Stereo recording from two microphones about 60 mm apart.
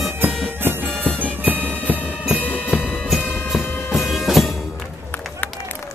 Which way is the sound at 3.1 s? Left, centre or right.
Centre.